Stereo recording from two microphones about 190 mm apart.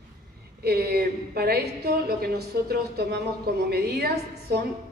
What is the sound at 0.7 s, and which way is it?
A woman's voice, 55° right (ahead or behind).